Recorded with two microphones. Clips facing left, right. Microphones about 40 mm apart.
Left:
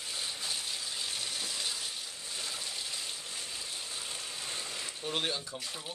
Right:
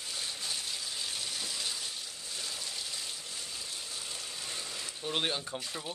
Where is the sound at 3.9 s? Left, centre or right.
Left.